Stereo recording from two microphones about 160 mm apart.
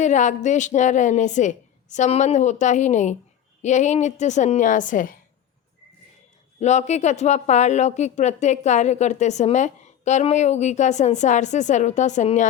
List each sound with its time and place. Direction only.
0.0 s speech: 50° left (ahead or behind)
6.6 s speech: 45° left (ahead or behind)